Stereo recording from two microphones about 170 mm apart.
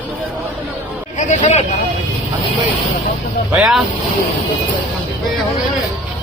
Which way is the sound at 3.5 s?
Centre (ahead or behind).